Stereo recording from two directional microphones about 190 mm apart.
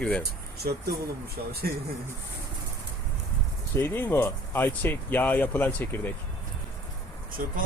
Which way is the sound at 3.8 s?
10° left (ahead or behind).